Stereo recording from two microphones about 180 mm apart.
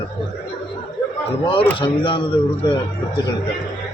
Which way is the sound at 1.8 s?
30° left (ahead or behind).